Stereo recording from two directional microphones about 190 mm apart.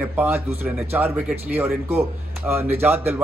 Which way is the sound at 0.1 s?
10° right (ahead or behind).